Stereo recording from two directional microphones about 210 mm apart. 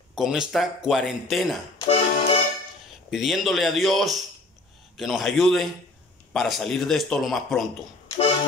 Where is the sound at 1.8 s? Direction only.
25° left (ahead or behind).